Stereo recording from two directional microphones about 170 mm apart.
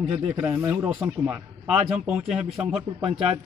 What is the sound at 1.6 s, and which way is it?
Speech, centre (ahead or behind).